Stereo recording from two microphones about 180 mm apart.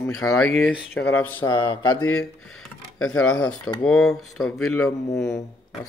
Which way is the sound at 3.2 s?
5° left (ahead or behind).